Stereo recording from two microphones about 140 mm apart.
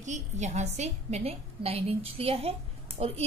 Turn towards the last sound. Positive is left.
turn(degrees=-45)  # may be behind; listen again after turning